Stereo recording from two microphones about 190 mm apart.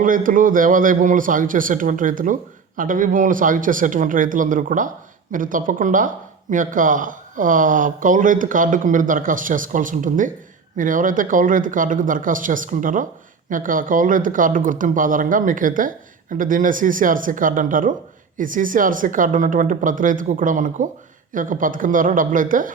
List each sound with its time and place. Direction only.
0.0 s a man's voice: 45° right (ahead or behind)